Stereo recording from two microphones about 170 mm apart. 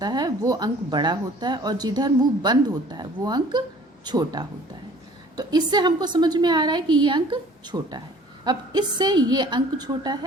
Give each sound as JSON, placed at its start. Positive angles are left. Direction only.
{"t": 0.0, "sound": "a woman's voice", "side_deg": -25}